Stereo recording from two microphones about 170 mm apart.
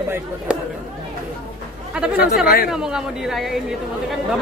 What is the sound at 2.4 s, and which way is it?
Speech, 60° left (ahead or behind).